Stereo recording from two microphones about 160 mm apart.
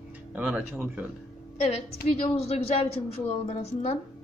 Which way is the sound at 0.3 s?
10° right (ahead or behind).